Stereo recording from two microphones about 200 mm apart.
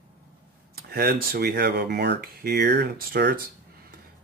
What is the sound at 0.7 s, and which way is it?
Speech, 50° right (ahead or behind).